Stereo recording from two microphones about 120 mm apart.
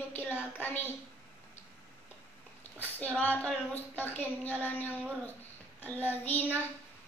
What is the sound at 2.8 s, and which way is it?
Speech, 10° left (ahead or behind).